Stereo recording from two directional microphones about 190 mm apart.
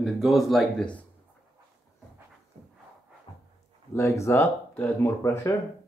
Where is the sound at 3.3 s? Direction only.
25° left (ahead or behind).